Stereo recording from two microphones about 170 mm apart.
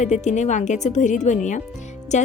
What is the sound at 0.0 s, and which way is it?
A woman's voice, 45° left (ahead or behind).